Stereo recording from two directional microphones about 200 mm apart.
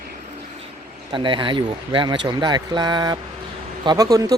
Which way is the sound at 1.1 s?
25° right (ahead or behind).